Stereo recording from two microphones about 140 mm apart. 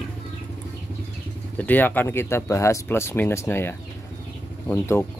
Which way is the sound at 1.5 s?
10° left (ahead or behind).